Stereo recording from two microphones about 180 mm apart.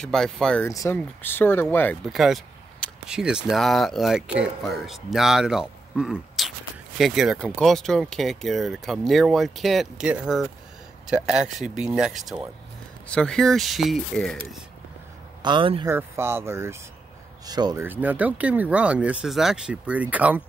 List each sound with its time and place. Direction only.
0.0 s speech: 5° left (ahead or behind)
0.7 s speech: 15° left (ahead or behind)
2.1 s speech: centre (ahead or behind)
15.4 s a man's voice: 30° right (ahead or behind)
15.9 s a man's voice: 15° right (ahead or behind)
17.8 s speech: 10° right (ahead or behind)